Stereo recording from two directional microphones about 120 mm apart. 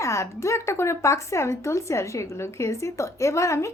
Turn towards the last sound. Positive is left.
turn(degrees=25)  # may be behind; listen again after turning